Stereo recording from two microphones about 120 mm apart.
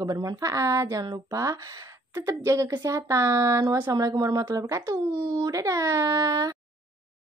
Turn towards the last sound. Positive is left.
turn(degrees=-35)  # may be behind; listen again after turning